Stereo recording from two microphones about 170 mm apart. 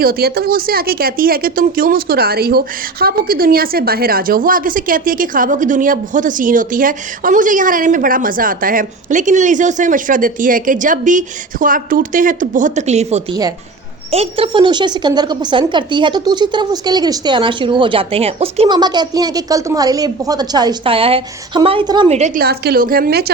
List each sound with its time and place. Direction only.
0.0 s speech: 65° right (ahead or behind); by 22.1 s 30° right (ahead or behind)
22.4 s a woman's voice: 65° right (ahead or behind)